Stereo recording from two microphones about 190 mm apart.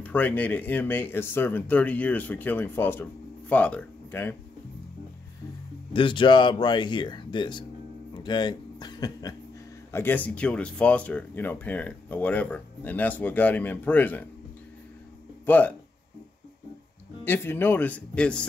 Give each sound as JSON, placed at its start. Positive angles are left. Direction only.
{"t": 0.0, "sound": "speech", "side_deg": 10}
{"t": 5.9, "sound": "speech", "side_deg": 25}
{"t": 8.1, "sound": "a sound", "side_deg": 25}
{"t": 9.8, "sound": "speech", "side_deg": 10}
{"t": 15.4, "sound": "speech", "side_deg": 10}
{"t": 17.2, "sound": "speech", "side_deg": 10}